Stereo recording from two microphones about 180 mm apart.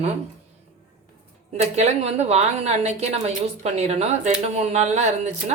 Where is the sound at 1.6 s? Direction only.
35° right (ahead or behind).